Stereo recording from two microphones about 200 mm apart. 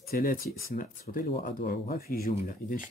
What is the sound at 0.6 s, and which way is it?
Speech, 45° left (ahead or behind).